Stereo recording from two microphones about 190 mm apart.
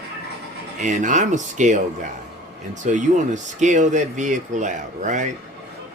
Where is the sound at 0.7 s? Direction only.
40° right (ahead or behind).